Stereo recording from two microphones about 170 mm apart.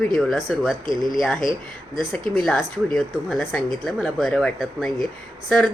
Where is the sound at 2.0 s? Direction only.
Centre (ahead or behind).